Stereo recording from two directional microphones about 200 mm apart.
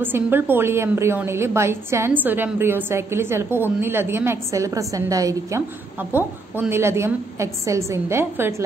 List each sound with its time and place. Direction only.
0.0 s a woman's voice: 10° right (ahead or behind)